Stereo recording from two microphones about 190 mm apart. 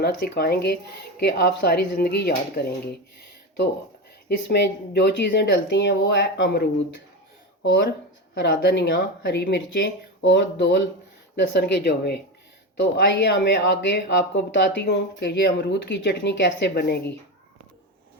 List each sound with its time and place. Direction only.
0.0 s speech: 60° left (ahead or behind)
4.3 s speech: 60° left (ahead or behind)